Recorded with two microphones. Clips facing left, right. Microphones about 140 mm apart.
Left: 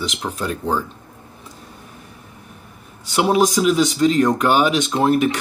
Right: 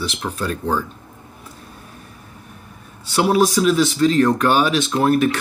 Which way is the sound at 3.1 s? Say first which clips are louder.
Even; 15° left (ahead or behind).